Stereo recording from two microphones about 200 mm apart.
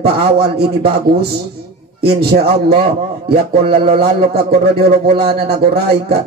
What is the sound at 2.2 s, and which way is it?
Speech, 55° right (ahead or behind).